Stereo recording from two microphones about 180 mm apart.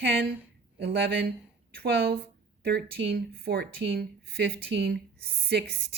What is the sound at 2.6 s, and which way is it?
Speech, 65° right (ahead or behind).